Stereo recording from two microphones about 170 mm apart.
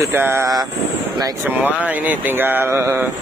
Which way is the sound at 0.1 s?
15° right (ahead or behind).